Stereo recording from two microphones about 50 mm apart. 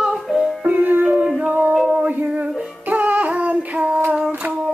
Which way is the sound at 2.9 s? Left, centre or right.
Right.